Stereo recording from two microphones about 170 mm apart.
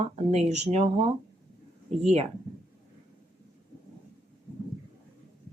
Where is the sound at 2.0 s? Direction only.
40° right (ahead or behind).